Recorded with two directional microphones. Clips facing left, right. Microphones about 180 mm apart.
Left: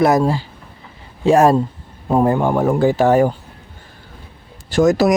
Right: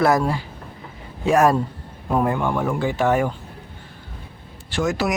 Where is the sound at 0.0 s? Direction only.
25° left (ahead or behind).